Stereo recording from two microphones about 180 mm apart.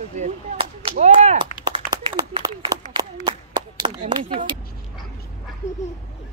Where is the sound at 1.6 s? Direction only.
25° right (ahead or behind).